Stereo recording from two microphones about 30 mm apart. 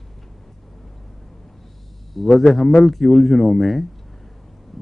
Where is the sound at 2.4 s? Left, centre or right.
Centre.